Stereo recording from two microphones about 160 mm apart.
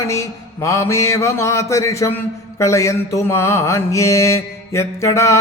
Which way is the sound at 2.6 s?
20° left (ahead or behind).